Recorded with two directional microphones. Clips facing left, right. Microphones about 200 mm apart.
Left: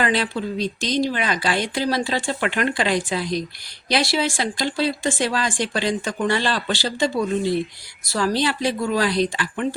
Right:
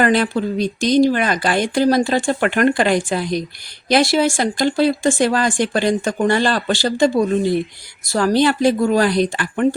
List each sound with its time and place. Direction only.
0.0 s speech: 50° right (ahead or behind)